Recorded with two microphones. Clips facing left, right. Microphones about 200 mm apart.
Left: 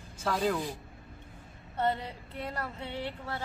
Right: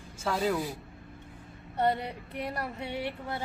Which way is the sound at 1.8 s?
15° right (ahead or behind).